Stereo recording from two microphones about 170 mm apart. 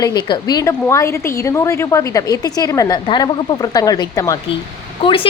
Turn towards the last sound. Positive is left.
turn(degrees=30)  # may be behind; listen again after turning